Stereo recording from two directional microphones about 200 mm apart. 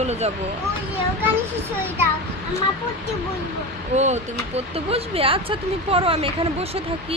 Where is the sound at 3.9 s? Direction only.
35° right (ahead or behind).